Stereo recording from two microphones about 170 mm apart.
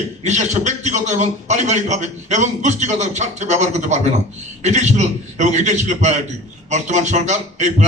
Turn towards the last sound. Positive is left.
turn(degrees=-45)  # may be behind; listen again after turning